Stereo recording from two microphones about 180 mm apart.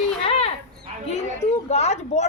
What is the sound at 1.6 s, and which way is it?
Speech, 40° left (ahead or behind).